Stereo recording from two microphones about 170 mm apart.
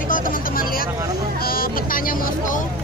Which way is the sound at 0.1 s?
55° left (ahead or behind).